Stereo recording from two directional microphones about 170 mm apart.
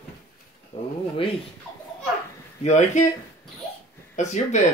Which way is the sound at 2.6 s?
45° left (ahead or behind).